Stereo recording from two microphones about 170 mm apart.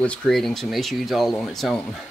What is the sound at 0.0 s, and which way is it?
Speech, 5° left (ahead or behind).